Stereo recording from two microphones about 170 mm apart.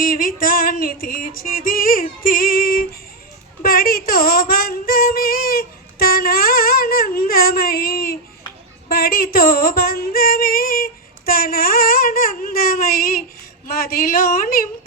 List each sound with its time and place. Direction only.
0.0 s female singing: 55° left (ahead or behind)
13.7 s a woman's voice: 60° left (ahead or behind)